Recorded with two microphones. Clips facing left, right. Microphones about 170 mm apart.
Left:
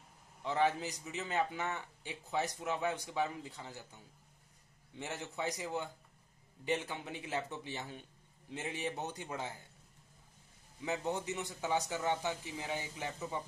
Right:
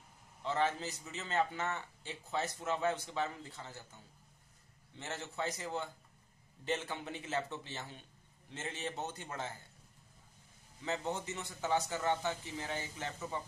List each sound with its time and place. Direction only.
0.4 s a man's voice: 15° left (ahead or behind)
4.9 s a man's voice: 15° left (ahead or behind)
10.8 s a man's voice: 15° left (ahead or behind)